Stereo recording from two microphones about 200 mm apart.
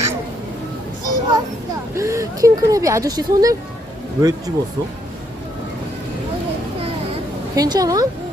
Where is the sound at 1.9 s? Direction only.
15° right (ahead or behind).